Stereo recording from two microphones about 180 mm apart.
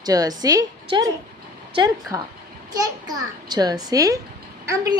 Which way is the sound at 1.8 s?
20° right (ahead or behind).